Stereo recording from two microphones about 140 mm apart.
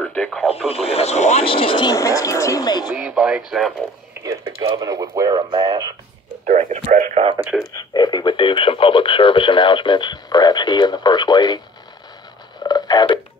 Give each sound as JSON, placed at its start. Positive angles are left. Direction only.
{"t": 0.0, "sound": "radio", "side_deg": 5}
{"t": 0.7, "sound": "speech", "side_deg": 45}
{"t": 2.0, "sound": "speech", "side_deg": 20}
{"t": 3.0, "sound": "speech", "side_deg": -5}
{"t": 4.2, "sound": "speech", "side_deg": -25}
{"t": 6.4, "sound": "speech", "side_deg": -60}
{"t": 7.7, "sound": "speech", "side_deg": 30}
{"t": 12.6, "sound": "a sound", "side_deg": 30}